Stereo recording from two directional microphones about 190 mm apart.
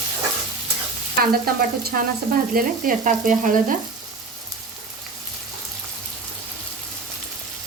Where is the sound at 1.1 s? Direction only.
50° right (ahead or behind).